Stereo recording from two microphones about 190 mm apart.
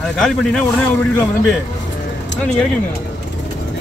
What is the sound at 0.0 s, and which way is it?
Speech, centre (ahead or behind).